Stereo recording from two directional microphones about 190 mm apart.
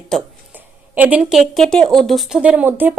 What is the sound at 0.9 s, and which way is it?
A woman's voice, 5° right (ahead or behind).